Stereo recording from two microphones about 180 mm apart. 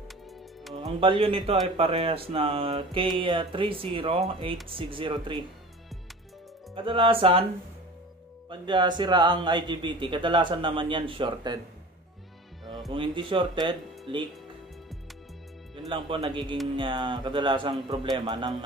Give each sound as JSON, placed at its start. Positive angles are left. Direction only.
{"t": 1.0, "sound": "a man's voice", "side_deg": -30}
{"t": 6.7, "sound": "speech", "side_deg": -30}
{"t": 8.5, "sound": "speech", "side_deg": -25}
{"t": 12.9, "sound": "speech", "side_deg": -30}
{"t": 15.9, "sound": "speech", "side_deg": -30}